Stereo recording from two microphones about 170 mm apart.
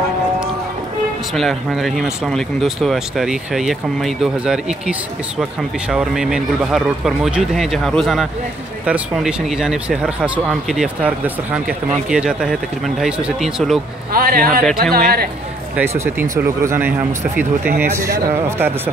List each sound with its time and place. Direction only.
1.3 s speech: centre (ahead or behind)
14.1 s a man's voice: 60° right (ahead or behind)
15.7 s speech: 15° right (ahead or behind)
17.9 s speech: 15° right (ahead or behind)